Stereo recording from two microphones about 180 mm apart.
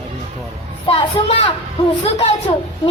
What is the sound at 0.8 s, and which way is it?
A woman's voice, 35° left (ahead or behind).